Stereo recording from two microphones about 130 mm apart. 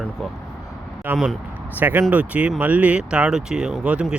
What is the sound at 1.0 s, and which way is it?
Speech, 15° right (ahead or behind).